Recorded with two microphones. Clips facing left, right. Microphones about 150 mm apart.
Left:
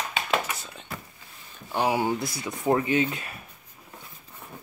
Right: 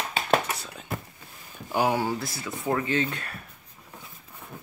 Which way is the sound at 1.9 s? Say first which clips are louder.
Left 2 dB; 15° left (ahead or behind).